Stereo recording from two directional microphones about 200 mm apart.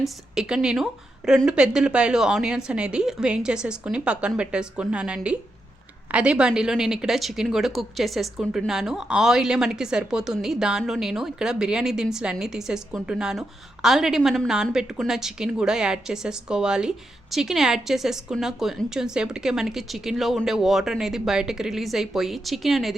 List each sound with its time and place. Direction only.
0.0 s a woman's voice: 5° right (ahead or behind)